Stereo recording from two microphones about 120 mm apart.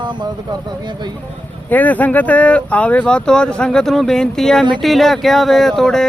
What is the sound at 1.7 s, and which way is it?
Speech, 15° left (ahead or behind).